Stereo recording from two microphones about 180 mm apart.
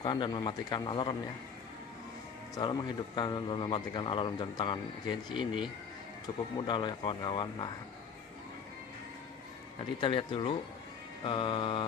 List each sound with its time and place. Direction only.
0.0 s a man's voice: 25° left (ahead or behind)
2.5 s a man's voice: 25° left (ahead or behind)
6.6 s a man's voice: 25° left (ahead or behind)
9.9 s a man's voice: 30° left (ahead or behind)